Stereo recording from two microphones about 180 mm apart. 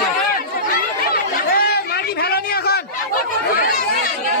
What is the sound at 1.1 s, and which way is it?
Chatter, 55° left (ahead or behind).